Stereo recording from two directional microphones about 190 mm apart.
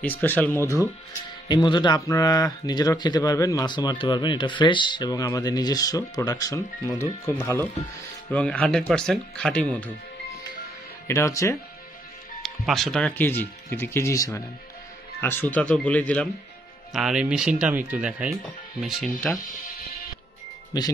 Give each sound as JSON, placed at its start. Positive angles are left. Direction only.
{"t": 0.0, "sound": "speech", "side_deg": 10}
{"t": 1.5, "sound": "speech", "side_deg": 25}
{"t": 11.1, "sound": "speech", "side_deg": 15}
{"t": 12.4, "sound": "speech", "side_deg": 0}
{"t": 16.9, "sound": "speech", "side_deg": -5}
{"t": 20.7, "sound": "speech", "side_deg": 20}